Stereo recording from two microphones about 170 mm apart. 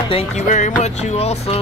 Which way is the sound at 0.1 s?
40° left (ahead or behind).